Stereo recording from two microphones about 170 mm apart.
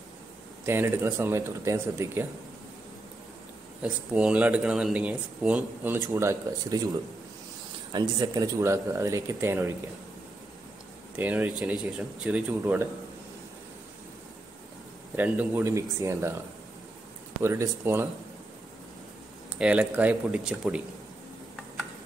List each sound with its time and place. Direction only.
0.7 s speech: 15° right (ahead or behind)
3.8 s speech: 5° right (ahead or behind)
7.9 s speech: 20° right (ahead or behind)
11.1 s speech: 10° right (ahead or behind)
15.1 s speech: 10° right (ahead or behind)
17.4 s speech: 15° right (ahead or behind)
19.6 s speech: 5° right (ahead or behind)